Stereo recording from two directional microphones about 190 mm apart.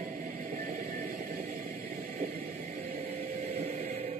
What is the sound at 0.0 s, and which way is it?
Music, 50° right (ahead or behind).